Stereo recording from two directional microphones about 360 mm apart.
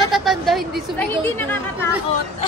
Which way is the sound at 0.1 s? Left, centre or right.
Centre.